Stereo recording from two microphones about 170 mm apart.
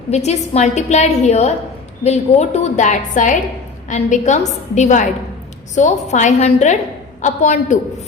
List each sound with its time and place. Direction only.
0.1 s a woman's voice: 40° left (ahead or behind)